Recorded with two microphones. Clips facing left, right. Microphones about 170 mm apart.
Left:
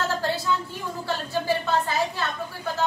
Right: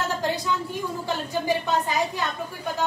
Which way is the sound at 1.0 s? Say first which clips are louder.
Left 1 dB; 15° right (ahead or behind).